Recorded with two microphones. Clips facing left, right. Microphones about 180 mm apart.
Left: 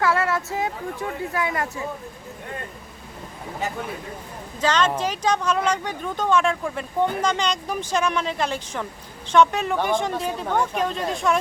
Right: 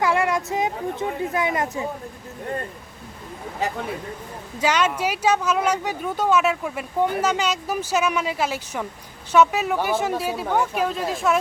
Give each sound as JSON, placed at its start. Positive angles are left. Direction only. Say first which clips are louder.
{"t": 0.0, "sound": "speech", "louder": "right 1 dB", "side_deg": -15}
{"t": 4.6, "sound": "speech", "louder": "even", "side_deg": -10}